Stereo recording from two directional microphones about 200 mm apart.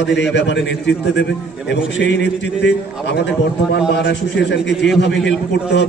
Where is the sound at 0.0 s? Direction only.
60° left (ahead or behind).